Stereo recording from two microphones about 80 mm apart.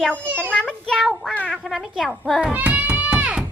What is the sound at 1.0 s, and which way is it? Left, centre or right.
Speech, centre.